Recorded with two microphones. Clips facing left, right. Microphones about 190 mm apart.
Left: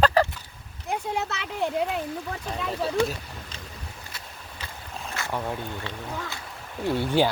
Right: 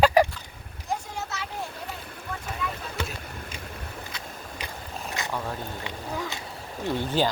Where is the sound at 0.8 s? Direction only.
60° left (ahead or behind).